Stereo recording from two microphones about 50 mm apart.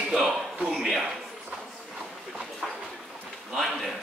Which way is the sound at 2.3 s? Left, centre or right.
Centre.